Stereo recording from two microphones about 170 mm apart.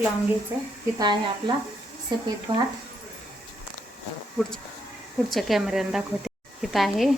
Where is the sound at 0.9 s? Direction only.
25° right (ahead or behind).